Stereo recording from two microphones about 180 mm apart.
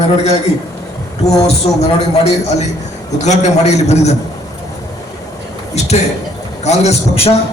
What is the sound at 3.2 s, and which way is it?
Speech, 40° left (ahead or behind).